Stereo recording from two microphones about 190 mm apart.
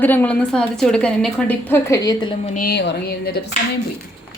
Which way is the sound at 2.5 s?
55° left (ahead or behind).